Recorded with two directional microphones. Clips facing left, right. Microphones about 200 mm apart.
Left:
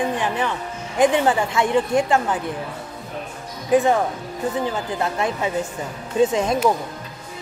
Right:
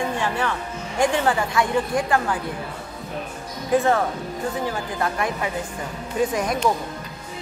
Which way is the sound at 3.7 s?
15° left (ahead or behind).